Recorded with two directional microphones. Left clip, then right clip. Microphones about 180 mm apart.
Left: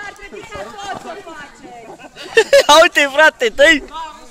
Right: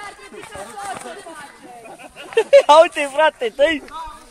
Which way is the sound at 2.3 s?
15° left (ahead or behind).